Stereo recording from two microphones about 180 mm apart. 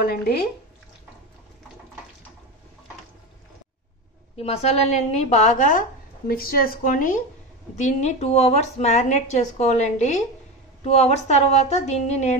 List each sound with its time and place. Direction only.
0.0 s speech: 60° left (ahead or behind)
4.4 s a woman's voice: 35° left (ahead or behind)